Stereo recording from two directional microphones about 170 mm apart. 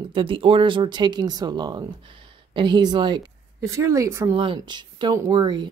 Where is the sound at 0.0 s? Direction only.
30° right (ahead or behind); by 4.4 s 15° right (ahead or behind).